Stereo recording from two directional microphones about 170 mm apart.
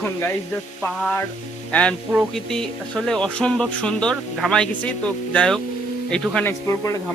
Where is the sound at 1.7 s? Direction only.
5° left (ahead or behind).